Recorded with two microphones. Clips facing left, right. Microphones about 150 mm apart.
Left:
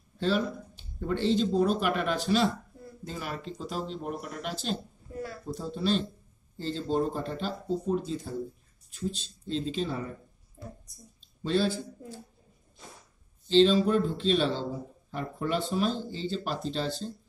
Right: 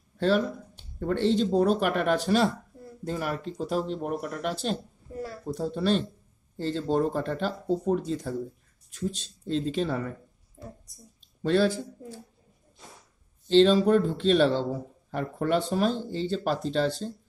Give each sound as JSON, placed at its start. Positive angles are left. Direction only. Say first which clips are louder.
{"t": 0.9, "sound": "speech", "louder": "right 2 dB", "side_deg": -60}
{"t": 9.2, "sound": "speech", "louder": "right 4 dB", "side_deg": -60}
{"t": 11.4, "sound": "a man's voice", "louder": "right 4 dB", "side_deg": -70}
{"t": 13.5, "sound": "speech", "louder": "right 3 dB", "side_deg": -60}